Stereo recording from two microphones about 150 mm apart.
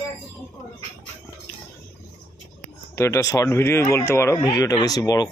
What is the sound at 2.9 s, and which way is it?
Speech, 20° left (ahead or behind).